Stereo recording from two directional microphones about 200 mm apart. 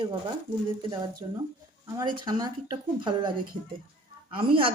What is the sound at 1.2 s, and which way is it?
Speech, 25° right (ahead or behind).